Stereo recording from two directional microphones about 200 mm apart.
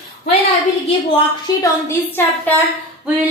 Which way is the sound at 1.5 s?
20° left (ahead or behind).